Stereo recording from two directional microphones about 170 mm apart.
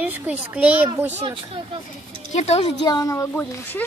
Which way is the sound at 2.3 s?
40° left (ahead or behind).